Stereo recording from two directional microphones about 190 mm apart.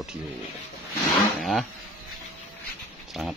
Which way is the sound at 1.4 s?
Centre (ahead or behind).